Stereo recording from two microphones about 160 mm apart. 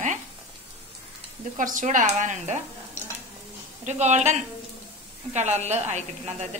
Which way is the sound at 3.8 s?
45° right (ahead or behind).